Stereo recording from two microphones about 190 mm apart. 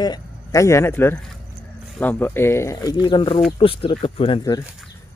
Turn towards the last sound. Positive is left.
turn(degrees=30)  # may be behind; listen again after turning